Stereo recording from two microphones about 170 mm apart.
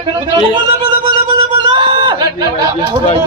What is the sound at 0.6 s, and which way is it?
Music, 25° right (ahead or behind).